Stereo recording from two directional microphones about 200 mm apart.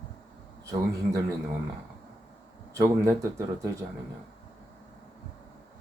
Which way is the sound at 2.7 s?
15° right (ahead or behind).